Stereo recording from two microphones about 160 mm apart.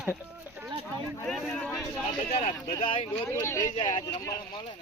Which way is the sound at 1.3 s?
5° left (ahead or behind).